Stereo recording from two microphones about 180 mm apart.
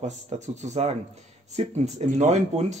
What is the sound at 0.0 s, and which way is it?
Speech, 40° right (ahead or behind).